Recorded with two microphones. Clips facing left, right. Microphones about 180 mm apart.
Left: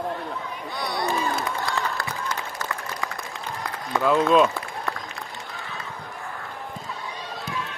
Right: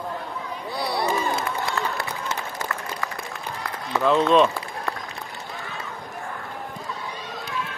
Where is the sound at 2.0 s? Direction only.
25° right (ahead or behind).